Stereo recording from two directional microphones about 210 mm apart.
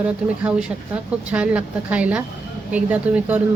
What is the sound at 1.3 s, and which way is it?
Speech, 5° right (ahead or behind).